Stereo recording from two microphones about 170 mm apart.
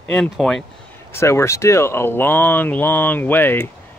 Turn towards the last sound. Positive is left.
turn(degrees=10)  # may be behind; listen again after turning